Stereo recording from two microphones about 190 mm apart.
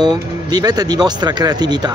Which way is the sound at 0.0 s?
20° right (ahead or behind).